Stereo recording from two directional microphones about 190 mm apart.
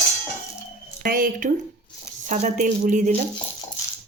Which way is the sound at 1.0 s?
45° right (ahead or behind).